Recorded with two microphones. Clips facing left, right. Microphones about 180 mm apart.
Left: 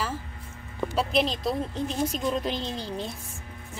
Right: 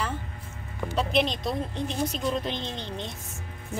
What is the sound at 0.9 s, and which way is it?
A woman's voice, 5° left (ahead or behind).